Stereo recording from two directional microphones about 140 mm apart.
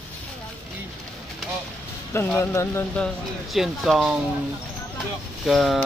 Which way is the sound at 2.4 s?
20° left (ahead or behind).